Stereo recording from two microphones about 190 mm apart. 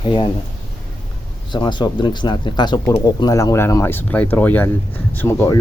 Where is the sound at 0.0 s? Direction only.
25° left (ahead or behind).